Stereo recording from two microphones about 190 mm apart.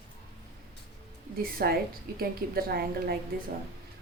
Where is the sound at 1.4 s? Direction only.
55° right (ahead or behind).